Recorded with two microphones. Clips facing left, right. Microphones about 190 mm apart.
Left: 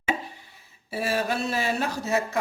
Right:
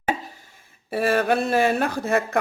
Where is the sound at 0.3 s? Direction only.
50° right (ahead or behind).